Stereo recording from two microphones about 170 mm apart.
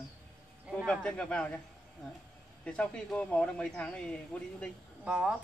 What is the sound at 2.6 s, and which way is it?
Speech, 5° left (ahead or behind).